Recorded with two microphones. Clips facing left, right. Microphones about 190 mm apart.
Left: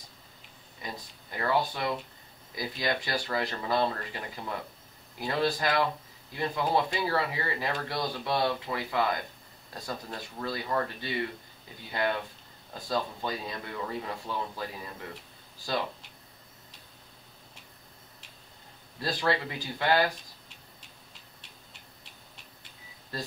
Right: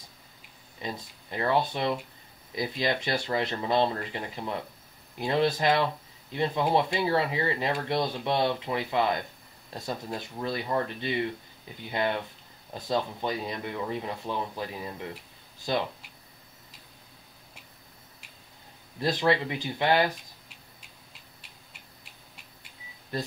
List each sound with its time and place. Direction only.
0.8 s speech: 25° right (ahead or behind)
18.9 s speech: 20° right (ahead or behind)
23.1 s speech: 20° right (ahead or behind)